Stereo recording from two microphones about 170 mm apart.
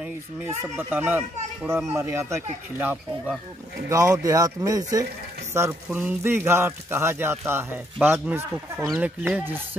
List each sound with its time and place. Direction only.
0.0 s speech: 10° right (ahead or behind)
8.8 s speech: centre (ahead or behind)